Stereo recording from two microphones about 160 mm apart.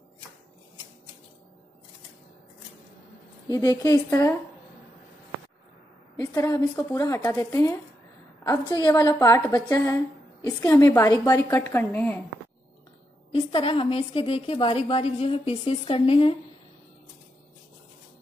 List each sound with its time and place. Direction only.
3.4 s a woman's voice: 20° left (ahead or behind)
6.3 s a woman's voice: 20° left (ahead or behind)
13.3 s a woman's voice: 35° left (ahead or behind)